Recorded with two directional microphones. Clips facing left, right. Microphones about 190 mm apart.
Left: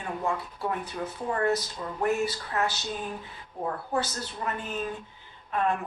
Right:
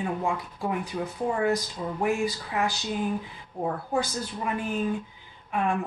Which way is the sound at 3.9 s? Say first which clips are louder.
Right 2 dB; 10° right (ahead or behind).